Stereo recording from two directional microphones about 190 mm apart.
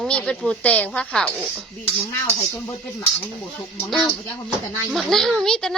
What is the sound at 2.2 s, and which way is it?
Speech, 20° left (ahead or behind).